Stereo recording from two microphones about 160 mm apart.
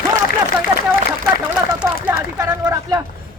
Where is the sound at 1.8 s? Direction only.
5° right (ahead or behind).